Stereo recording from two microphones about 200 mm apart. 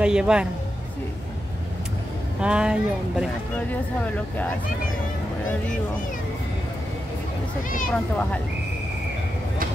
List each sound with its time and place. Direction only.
0.0 s speech: 5° right (ahead or behind)
2.4 s speech: 5° right (ahead or behind)
3.5 s speech: 5° left (ahead or behind)
7.9 s speech: 5° left (ahead or behind)